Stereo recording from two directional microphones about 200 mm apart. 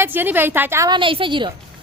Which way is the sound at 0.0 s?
10° right (ahead or behind).